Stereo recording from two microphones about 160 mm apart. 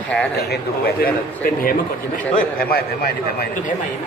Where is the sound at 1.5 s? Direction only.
65° left (ahead or behind).